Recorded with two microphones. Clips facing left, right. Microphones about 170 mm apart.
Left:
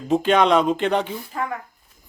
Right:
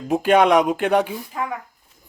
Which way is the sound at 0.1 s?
10° right (ahead or behind).